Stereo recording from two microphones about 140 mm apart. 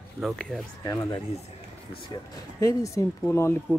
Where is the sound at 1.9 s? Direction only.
40° left (ahead or behind).